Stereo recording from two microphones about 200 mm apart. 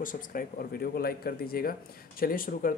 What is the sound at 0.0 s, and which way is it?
Speech, 45° left (ahead or behind).